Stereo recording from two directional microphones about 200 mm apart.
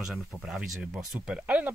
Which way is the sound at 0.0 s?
Centre (ahead or behind).